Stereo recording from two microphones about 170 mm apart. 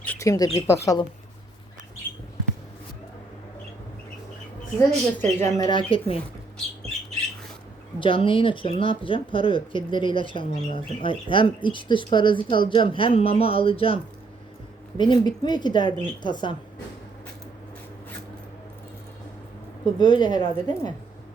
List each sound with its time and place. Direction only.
0.0 s squawk: 10° left (ahead or behind)
0.3 s speech: 20° left (ahead or behind)
4.9 s speech: 15° left (ahead or behind); by 6.1 s 30° left (ahead or behind)
7.9 s speech: 30° left (ahead or behind)
19.8 s speech: 25° left (ahead or behind)